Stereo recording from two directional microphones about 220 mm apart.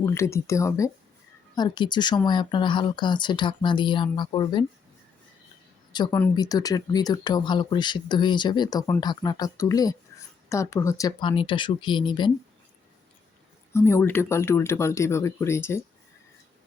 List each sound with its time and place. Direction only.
0.0 s speech: 10° left (ahead or behind)
5.9 s speech: 15° left (ahead or behind)
13.7 s speech: 10° left (ahead or behind)